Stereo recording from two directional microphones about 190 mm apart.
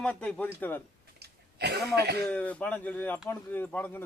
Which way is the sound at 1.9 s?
55° right (ahead or behind).